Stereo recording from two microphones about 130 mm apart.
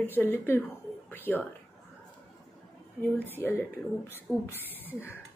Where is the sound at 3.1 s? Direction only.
15° left (ahead or behind).